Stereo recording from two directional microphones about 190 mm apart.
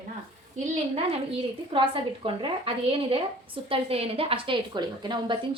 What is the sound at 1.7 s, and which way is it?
A woman's voice, 25° right (ahead or behind).